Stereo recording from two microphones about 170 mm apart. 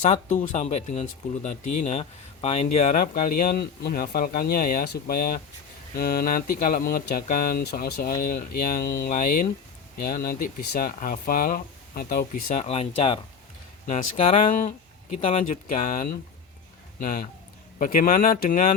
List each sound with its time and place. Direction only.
0.0 s speech: 45° left (ahead or behind)
12.6 s speech: 35° left (ahead or behind)